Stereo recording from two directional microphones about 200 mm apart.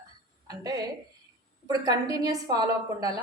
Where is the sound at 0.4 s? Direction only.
20° right (ahead or behind).